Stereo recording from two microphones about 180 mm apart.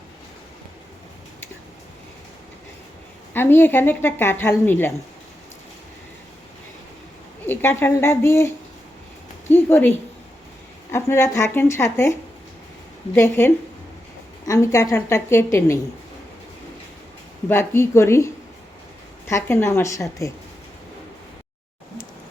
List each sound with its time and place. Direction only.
3.3 s a woman's voice: 10° left (ahead or behind)
7.4 s a woman's voice: 10° left (ahead or behind)
10.9 s a woman's voice: 15° left (ahead or behind)
13.1 s a woman's voice: 15° left (ahead or behind)
17.5 s a woman's voice: 15° left (ahead or behind)
19.3 s a woman's voice: 15° left (ahead or behind)